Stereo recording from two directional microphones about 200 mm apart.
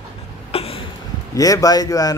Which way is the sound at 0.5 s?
30° left (ahead or behind).